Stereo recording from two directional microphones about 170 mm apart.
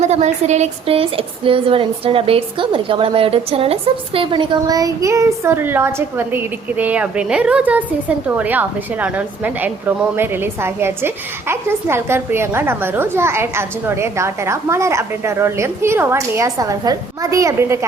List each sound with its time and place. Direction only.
0.0 s a woman's voice: 40° right (ahead or behind); by 17.8 s 15° right (ahead or behind)